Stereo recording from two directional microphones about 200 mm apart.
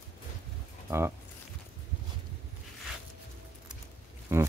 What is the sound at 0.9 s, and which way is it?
Speech, 10° right (ahead or behind).